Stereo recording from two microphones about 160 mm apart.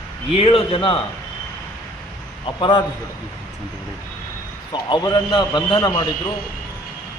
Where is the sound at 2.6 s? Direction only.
30° left (ahead or behind).